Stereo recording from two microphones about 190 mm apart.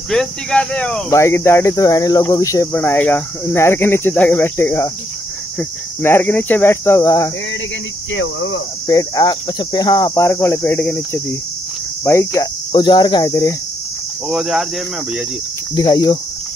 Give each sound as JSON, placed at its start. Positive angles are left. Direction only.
{"t": 0.1, "sound": "speech", "side_deg": 5}
{"t": 8.1, "sound": "cricket", "side_deg": 75}
{"t": 8.8, "sound": "speech", "side_deg": 20}
{"t": 12.0, "sound": "speech", "side_deg": 15}
{"t": 14.3, "sound": "speech", "side_deg": 0}
{"t": 15.7, "sound": "speech", "side_deg": 20}